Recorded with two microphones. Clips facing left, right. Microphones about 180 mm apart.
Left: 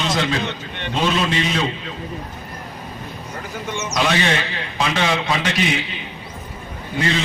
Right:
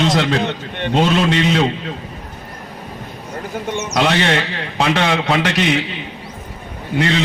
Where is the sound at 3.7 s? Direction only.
60° right (ahead or behind).